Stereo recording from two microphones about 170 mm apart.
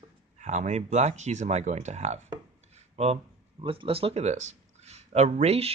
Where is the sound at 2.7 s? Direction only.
40° right (ahead or behind).